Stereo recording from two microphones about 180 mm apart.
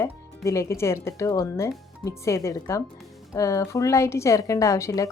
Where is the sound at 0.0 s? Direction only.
15° left (ahead or behind).